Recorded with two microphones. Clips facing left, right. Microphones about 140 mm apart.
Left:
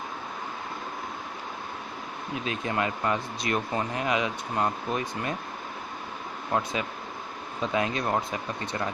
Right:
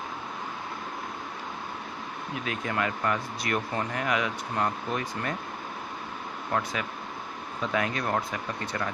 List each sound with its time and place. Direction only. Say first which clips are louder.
2.4 s speech: left 1 dB; 25° left (ahead or behind)
6.5 s speech: left 2 dB; 20° left (ahead or behind)